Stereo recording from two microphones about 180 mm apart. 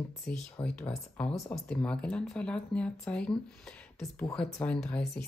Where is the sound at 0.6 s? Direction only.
25° left (ahead or behind).